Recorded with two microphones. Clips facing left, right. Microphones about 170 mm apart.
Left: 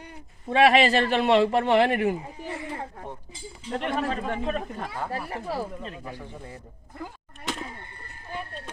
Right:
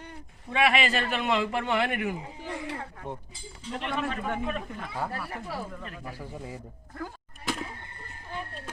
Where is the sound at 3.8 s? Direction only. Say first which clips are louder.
Left 4 dB; 45° left (ahead or behind); by 6.1 s 25° left (ahead or behind).